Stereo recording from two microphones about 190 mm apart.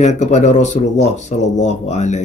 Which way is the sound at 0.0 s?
40° left (ahead or behind).